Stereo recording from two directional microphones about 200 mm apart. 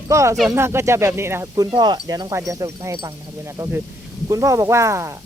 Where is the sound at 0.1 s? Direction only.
15° right (ahead or behind).